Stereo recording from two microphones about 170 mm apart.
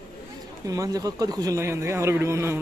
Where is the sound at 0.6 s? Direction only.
20° right (ahead or behind).